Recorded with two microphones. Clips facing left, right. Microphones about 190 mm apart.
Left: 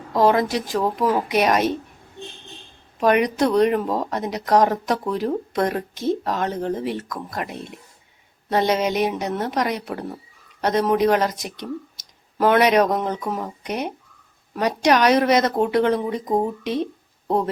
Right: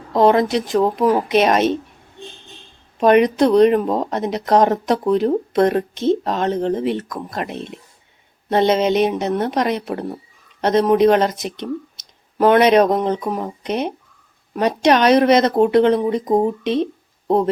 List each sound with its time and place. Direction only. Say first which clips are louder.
0.1 s speech: right 4 dB; 20° right (ahead or behind)
3.0 s speech: right 5 dB; 25° right (ahead or behind)